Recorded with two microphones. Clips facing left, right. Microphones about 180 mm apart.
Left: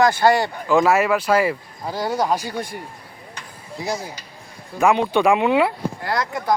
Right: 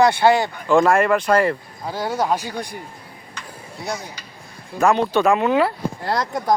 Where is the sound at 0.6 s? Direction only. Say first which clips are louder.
Right 1 dB; 5° left (ahead or behind).